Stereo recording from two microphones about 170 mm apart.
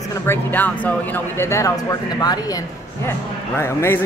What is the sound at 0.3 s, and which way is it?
Speech, 10° left (ahead or behind).